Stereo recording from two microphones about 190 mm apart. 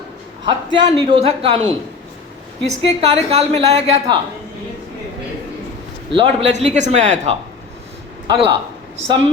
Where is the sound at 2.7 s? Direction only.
35° right (ahead or behind).